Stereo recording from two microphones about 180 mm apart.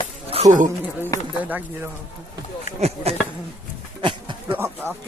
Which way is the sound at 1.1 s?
20° left (ahead or behind).